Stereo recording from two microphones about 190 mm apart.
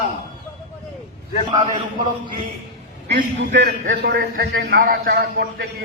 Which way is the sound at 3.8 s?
55° right (ahead or behind).